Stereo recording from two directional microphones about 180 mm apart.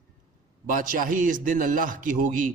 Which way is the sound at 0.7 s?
50° right (ahead or behind).